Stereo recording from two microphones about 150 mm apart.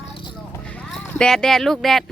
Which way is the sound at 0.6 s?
10° left (ahead or behind).